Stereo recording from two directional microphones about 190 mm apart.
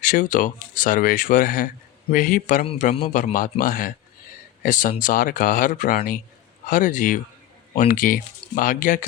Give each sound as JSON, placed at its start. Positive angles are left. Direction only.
{"t": 0.0, "sound": "a man's voice", "side_deg": 45}